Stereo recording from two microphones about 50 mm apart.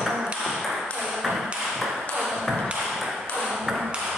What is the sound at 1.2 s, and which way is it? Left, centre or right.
Tap, centre.